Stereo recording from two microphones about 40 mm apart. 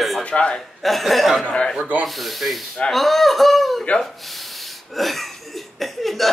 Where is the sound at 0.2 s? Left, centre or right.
Left.